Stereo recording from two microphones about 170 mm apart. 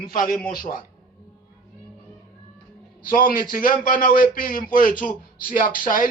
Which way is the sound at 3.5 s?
55° left (ahead or behind).